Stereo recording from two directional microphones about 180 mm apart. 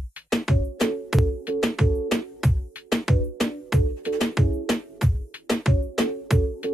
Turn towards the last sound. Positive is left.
turn(degrees=0)  # may be behind; listen again after turning